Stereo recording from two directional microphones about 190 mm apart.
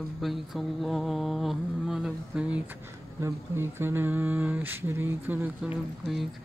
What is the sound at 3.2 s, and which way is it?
Speech, 15° right (ahead or behind).